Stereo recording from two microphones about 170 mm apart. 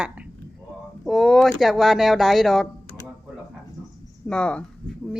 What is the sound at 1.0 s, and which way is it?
Speech, centre (ahead or behind).